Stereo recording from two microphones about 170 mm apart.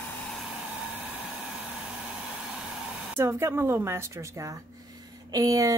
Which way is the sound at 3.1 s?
15° right (ahead or behind).